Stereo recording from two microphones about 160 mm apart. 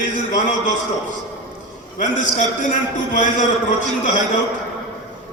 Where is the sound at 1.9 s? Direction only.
50° left (ahead or behind).